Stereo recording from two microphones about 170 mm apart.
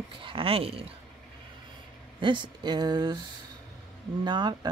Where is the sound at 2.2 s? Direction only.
30° right (ahead or behind).